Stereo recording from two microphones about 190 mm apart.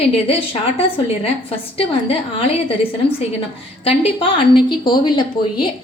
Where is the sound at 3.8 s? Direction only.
25° left (ahead or behind).